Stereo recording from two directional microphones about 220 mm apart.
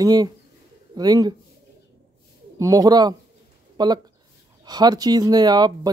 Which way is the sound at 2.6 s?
15° right (ahead or behind).